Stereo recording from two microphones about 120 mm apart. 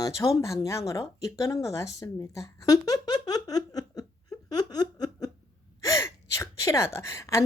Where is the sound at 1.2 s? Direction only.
25° left (ahead or behind).